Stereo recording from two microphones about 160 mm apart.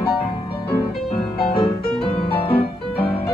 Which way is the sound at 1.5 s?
35° left (ahead or behind).